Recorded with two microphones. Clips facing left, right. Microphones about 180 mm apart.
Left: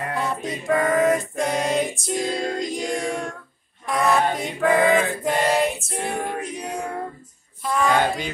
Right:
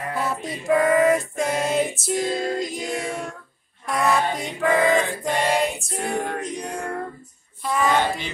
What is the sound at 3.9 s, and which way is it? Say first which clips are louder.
Male singing: left 1 dB; centre (ahead or behind).